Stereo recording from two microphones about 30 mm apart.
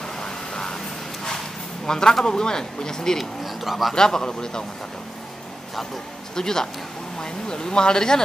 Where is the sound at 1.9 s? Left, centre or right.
Left.